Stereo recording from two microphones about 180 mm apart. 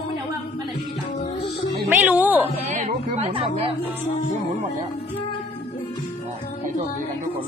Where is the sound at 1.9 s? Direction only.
10° right (ahead or behind).